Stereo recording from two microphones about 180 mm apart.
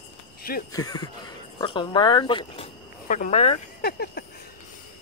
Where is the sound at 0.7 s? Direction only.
20° left (ahead or behind).